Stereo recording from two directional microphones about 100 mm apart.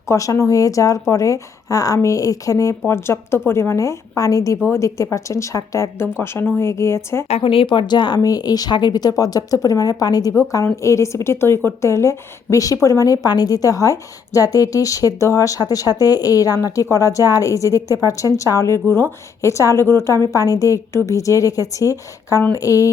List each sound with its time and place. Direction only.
0.1 s a woman's voice: 35° left (ahead or behind)
7.3 s a woman's voice: 80° left; by 22.9 s 35° left (ahead or behind)